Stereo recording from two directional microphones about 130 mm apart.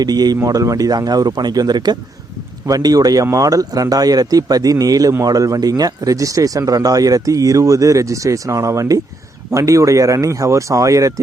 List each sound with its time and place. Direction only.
0.0 s speech: 30° right (ahead or behind)